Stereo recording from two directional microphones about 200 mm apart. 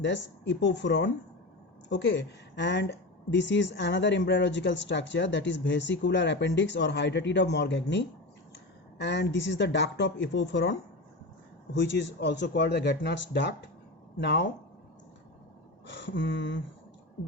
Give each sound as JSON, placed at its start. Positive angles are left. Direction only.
{"t": 0.0, "sound": "a woman's voice", "side_deg": 60}
{"t": 15.9, "sound": "a woman's voice", "side_deg": 65}